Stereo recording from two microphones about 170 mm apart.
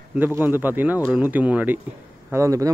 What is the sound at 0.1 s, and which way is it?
Speech, 10° right (ahead or behind).